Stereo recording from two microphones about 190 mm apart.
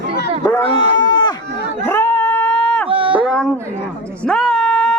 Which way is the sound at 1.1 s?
20° left (ahead or behind).